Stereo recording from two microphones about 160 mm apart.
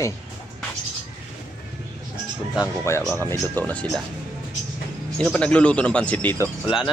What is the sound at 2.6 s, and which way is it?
Speech, 15° left (ahead or behind).